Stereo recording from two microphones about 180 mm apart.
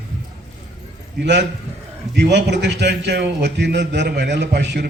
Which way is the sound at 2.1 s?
70° right (ahead or behind).